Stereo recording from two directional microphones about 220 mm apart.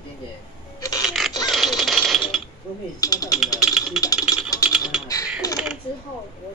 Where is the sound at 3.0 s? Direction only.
15° left (ahead or behind).